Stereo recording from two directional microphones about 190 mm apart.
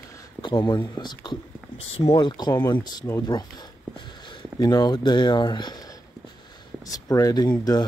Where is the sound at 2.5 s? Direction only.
10° left (ahead or behind).